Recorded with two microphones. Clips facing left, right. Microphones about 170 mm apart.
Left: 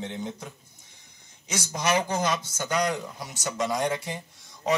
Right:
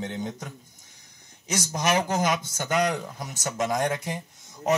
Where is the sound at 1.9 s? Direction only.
50° right (ahead or behind).